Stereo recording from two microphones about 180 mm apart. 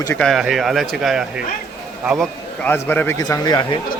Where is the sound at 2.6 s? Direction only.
15° left (ahead or behind).